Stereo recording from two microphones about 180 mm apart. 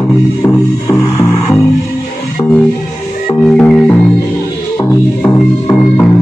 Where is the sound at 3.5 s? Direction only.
5° left (ahead or behind).